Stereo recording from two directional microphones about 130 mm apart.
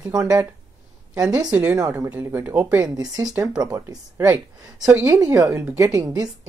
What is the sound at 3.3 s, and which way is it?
Speech, 5° right (ahead or behind).